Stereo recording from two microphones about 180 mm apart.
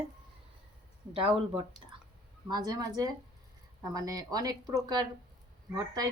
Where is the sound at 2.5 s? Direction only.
25° right (ahead or behind).